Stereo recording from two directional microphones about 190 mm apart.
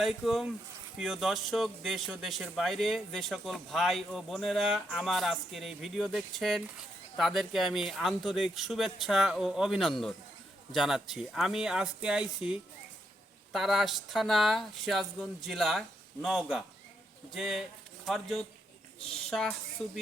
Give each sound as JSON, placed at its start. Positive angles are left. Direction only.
{"t": 0.0, "sound": "speech", "side_deg": 0}